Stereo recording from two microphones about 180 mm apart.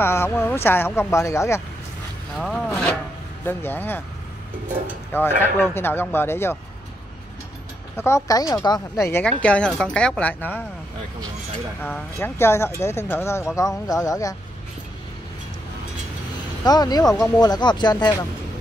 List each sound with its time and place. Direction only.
0.0 s speech: 15° left (ahead or behind)
2.3 s wood: 5° left (ahead or behind)
3.4 s speech: 10° left (ahead or behind)
5.1 s speech: 10° left (ahead or behind)
7.9 s speech: 15° left (ahead or behind)
11.8 s speech: 10° left (ahead or behind)
16.6 s speech: 20° left (ahead or behind)